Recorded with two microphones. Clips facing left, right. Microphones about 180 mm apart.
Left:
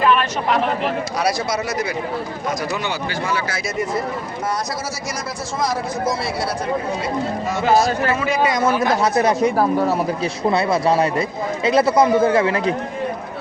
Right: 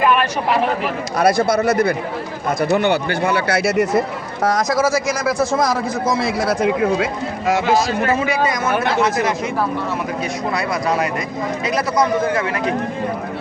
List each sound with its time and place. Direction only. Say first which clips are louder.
0.0 s a sound: right 1 dB; 10° right (ahead or behind)
1.2 s speech: right 8 dB; 55° right (ahead or behind); by 4.0 s 80° right
4.4 s speech: right 10 dB; 90° right
9.1 s speech: left 4 dB; 35° left (ahead or behind)
10.5 s speech: left 4 dB; 25° left (ahead or behind)